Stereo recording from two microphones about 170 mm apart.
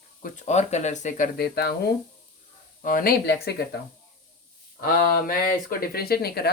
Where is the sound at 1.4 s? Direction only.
70° left (ahead or behind).